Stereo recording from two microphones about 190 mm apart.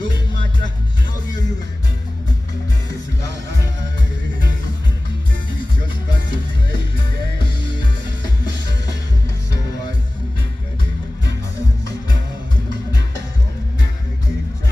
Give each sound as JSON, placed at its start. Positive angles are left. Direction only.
{"t": 0.0, "sound": "music", "side_deg": 25}